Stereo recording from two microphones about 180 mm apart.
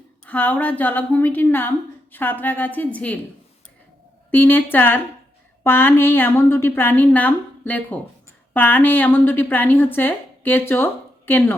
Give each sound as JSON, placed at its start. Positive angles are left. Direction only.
{"t": 0.3, "sound": "a woman's voice", "side_deg": 10}
{"t": 4.3, "sound": "a woman's voice", "side_deg": 10}